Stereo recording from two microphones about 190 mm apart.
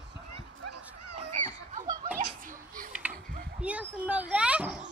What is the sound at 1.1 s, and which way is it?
Children playing, 40° right (ahead or behind).